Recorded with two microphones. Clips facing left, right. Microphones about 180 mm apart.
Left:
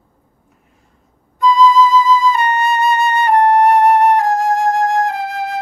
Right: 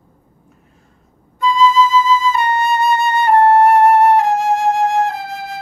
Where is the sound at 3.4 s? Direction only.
15° left (ahead or behind).